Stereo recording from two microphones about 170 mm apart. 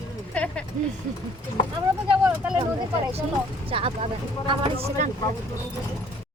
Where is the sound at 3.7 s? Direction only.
35° right (ahead or behind).